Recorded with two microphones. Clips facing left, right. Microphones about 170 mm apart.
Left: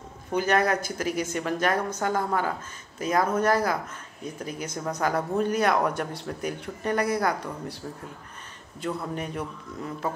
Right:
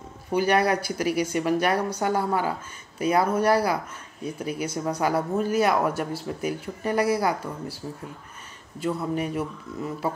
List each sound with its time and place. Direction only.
0.3 s speech: 10° right (ahead or behind)
8.7 s speech: 5° right (ahead or behind)